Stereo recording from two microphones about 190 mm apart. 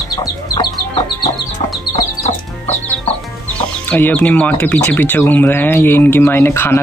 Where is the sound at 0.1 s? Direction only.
20° left (ahead or behind).